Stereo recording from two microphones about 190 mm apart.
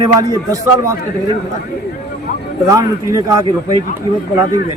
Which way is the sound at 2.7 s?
15° right (ahead or behind).